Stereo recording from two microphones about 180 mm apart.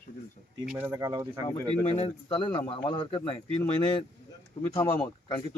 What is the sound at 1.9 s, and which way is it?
Speech, 30° left (ahead or behind).